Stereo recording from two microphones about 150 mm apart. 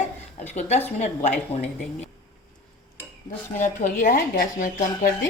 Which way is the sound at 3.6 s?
60° left (ahead or behind).